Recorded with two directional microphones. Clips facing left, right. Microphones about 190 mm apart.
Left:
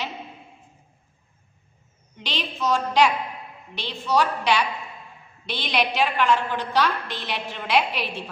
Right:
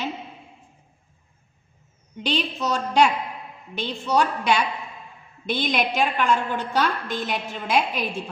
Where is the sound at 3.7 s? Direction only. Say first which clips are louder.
Right 1 dB; 45° right (ahead or behind).